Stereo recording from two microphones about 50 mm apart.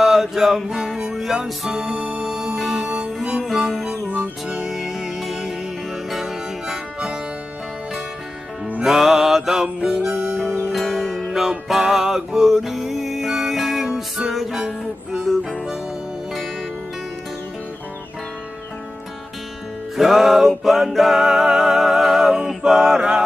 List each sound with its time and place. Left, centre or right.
0.0 s music: centre
1.7 s music: right
2.8 s music: right
3.7 s music: centre
4.1 s music: right
4.6 s music: centre
8.8 s music: centre
9.8 s music: right
10.7 s music: centre
20.0 s music: centre